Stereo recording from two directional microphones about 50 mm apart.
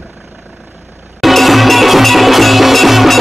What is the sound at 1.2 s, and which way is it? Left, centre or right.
Music, centre.